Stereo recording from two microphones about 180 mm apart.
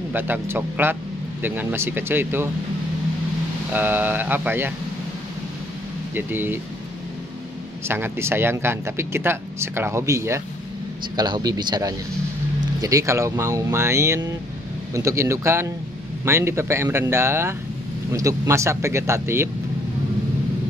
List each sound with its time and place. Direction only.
0.1 s speech: 10° right (ahead or behind)
3.7 s speech: 10° right (ahead or behind)
6.1 s speech: 10° right (ahead or behind)
7.9 s speech: 15° right (ahead or behind)